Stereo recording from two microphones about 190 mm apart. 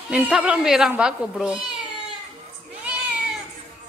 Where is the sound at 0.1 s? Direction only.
5° right (ahead or behind).